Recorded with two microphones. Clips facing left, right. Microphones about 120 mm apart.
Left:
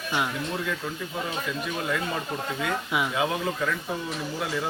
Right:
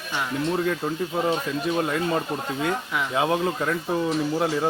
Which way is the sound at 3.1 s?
30° right (ahead or behind).